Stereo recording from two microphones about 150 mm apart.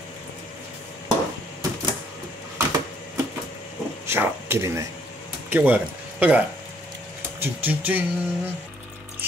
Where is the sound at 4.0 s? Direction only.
15° right (ahead or behind).